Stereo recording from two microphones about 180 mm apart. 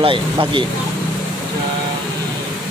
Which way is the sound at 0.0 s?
30° right (ahead or behind).